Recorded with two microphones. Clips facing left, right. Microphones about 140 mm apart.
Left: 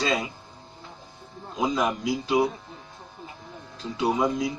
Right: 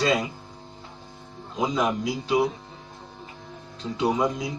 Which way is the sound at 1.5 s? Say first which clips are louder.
Right 1 dB; centre (ahead or behind).